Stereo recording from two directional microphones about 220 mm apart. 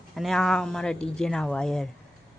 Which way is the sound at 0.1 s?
Centre (ahead or behind).